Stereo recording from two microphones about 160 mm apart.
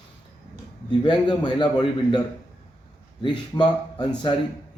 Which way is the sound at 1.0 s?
25° left (ahead or behind).